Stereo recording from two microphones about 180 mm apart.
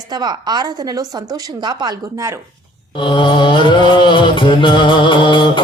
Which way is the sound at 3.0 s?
25° left (ahead or behind).